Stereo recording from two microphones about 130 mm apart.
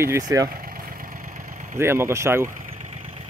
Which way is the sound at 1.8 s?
20° right (ahead or behind).